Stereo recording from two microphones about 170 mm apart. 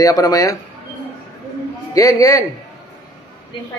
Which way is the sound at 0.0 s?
20° left (ahead or behind).